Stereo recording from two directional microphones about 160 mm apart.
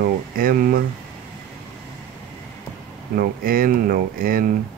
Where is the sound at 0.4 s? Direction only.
65° right (ahead or behind).